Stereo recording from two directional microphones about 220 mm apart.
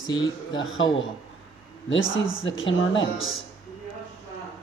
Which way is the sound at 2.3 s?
60° left (ahead or behind).